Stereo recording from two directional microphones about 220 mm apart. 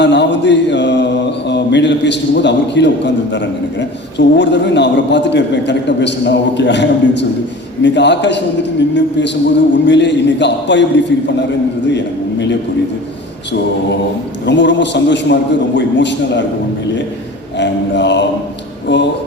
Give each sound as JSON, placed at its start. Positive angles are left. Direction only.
{"t": 0.0, "sound": "mantra", "side_deg": 50}
{"t": 1.5, "sound": "a man's voice", "side_deg": 55}
{"t": 14.4, "sound": "a man's voice", "side_deg": 55}
{"t": 17.6, "sound": "a man's voice", "side_deg": 55}